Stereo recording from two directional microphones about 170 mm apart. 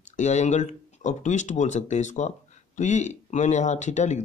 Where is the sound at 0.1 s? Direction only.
45° left (ahead or behind).